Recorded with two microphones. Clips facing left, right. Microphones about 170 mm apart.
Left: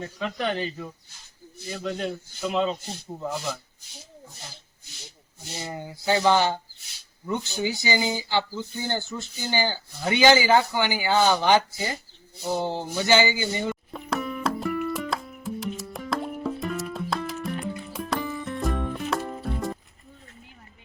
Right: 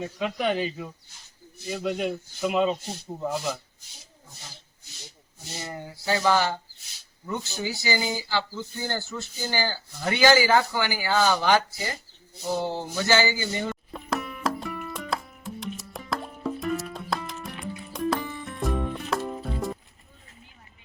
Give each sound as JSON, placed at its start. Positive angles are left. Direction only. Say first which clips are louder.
{"t": 0.0, "sound": "speech", "louder": "right 2 dB", "side_deg": -10}
{"t": 5.5, "sound": "speech", "louder": "left 2 dB", "side_deg": 20}
{"t": 13.9, "sound": "music", "louder": "left 2 dB", "side_deg": 0}